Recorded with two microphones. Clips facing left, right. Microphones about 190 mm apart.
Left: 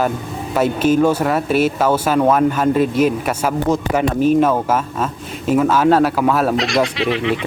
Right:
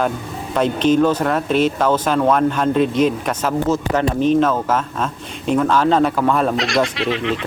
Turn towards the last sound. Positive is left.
turn(degrees=0)  # may be behind; listen again after turning